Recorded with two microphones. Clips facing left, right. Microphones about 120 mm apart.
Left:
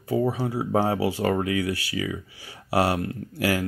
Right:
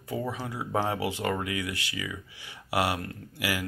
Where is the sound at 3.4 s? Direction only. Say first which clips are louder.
Left 7 dB; 45° left (ahead or behind).